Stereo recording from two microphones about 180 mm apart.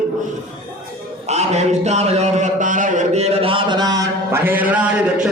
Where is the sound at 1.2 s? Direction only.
40° right (ahead or behind); by 4.8 s 10° right (ahead or behind).